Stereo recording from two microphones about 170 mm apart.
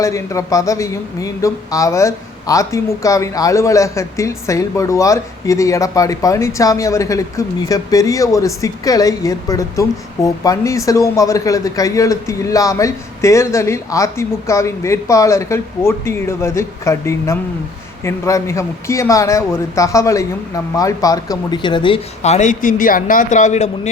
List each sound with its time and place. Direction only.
0.0 s a man's voice: 20° left (ahead or behind); by 23.9 s 40° left (ahead or behind)